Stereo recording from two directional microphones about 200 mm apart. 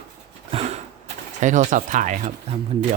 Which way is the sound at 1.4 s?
40° right (ahead or behind).